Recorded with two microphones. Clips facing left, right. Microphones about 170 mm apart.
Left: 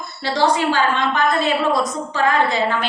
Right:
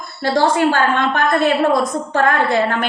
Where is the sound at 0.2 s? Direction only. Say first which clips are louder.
Right 3 dB; 50° right (ahead or behind).